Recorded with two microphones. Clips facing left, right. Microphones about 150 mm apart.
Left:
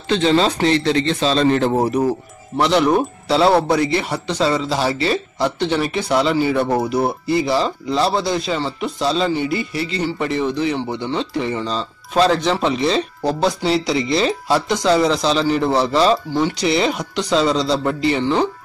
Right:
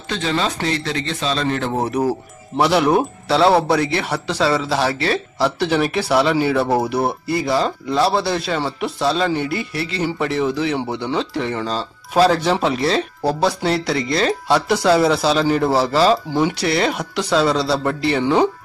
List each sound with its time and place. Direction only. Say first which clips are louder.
0.1 s a man's voice: left 6 dB; 30° left (ahead or behind)
1.9 s speech: left 1 dB; 5° right (ahead or behind)
18.2 s speech: right 5 dB; 10° right (ahead or behind)